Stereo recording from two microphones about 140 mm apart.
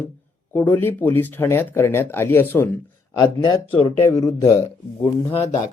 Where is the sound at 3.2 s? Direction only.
30° left (ahead or behind).